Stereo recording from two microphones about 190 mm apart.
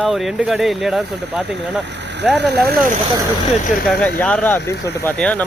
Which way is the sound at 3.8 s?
5° left (ahead or behind).